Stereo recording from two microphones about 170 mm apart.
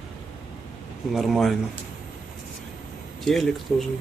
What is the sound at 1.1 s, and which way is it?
Speech, centre (ahead or behind).